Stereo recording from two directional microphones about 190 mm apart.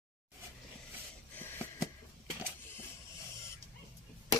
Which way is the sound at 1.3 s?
10° left (ahead or behind).